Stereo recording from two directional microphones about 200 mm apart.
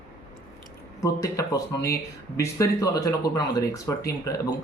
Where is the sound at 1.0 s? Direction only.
15° left (ahead or behind).